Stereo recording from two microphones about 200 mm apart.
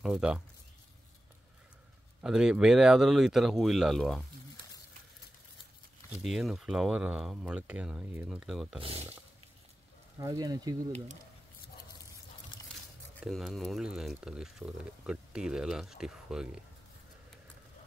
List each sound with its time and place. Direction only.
0.0 s speech: 5° right (ahead or behind)
2.2 s speech: 5° right (ahead or behind)
6.2 s speech: centre (ahead or behind)
8.8 s speech: 30° right (ahead or behind)
10.1 s speech: 20° right (ahead or behind)
13.2 s speech: centre (ahead or behind)